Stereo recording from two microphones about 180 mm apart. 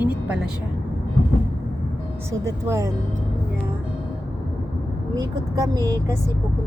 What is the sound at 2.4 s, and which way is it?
Speech, 15° right (ahead or behind).